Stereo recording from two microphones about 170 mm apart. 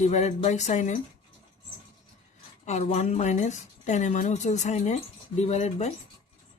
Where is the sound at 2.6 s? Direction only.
40° left (ahead or behind).